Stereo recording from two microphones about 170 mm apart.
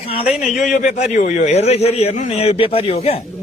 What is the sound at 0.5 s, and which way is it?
A man's voice, 45° left (ahead or behind).